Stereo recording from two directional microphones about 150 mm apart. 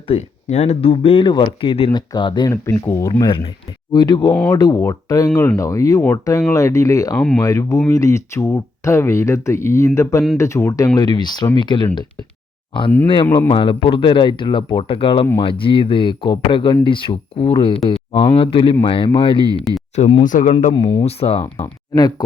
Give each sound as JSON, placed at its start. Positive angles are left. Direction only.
{"t": 0.1, "sound": "speech", "side_deg": 45}
{"t": 2.5, "sound": "speech", "side_deg": 15}
{"t": 3.1, "sound": "speech", "side_deg": 30}
{"t": 4.3, "sound": "speech", "side_deg": 5}
{"t": 4.5, "sound": "speech", "side_deg": 25}
{"t": 7.2, "sound": "speech", "side_deg": 5}
{"t": 7.4, "sound": "speech", "side_deg": 25}
{"t": 13.5, "sound": "speech", "side_deg": 35}
{"t": 20.2, "sound": "speech", "side_deg": 60}
{"t": 20.7, "sound": "speech", "side_deg": 25}
{"t": 21.0, "sound": "speech", "side_deg": 40}
{"t": 21.4, "sound": "speech", "side_deg": 20}